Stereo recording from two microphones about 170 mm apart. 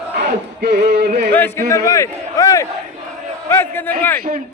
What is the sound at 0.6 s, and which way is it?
Music, 75° right (ahead or behind).